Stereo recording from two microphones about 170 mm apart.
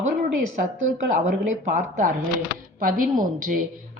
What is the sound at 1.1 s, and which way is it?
A woman's voice, 45° right (ahead or behind).